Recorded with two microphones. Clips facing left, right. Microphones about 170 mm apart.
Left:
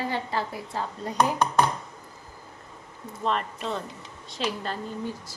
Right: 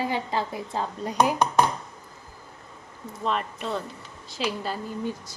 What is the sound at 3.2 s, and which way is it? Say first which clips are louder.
A woman's voice: even; centre (ahead or behind).